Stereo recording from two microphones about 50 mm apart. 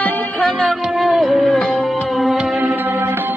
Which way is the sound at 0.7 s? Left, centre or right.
Centre.